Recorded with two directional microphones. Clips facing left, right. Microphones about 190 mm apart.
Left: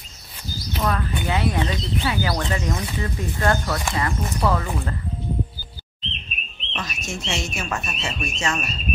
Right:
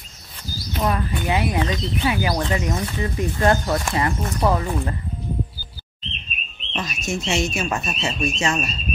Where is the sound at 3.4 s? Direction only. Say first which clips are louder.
Right 3 dB; 20° right (ahead or behind).